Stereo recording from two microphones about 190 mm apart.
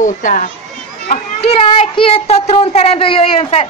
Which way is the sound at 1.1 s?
30° left (ahead or behind).